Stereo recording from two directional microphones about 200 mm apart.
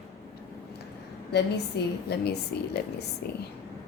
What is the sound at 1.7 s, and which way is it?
A woman's voice, 55° left (ahead or behind).